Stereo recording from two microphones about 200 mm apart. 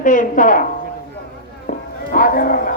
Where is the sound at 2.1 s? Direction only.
45° left (ahead or behind).